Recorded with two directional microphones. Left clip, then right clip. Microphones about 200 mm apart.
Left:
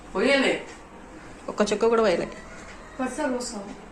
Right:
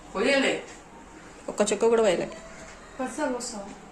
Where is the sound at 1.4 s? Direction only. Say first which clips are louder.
Left 1 dB; 20° right (ahead or behind).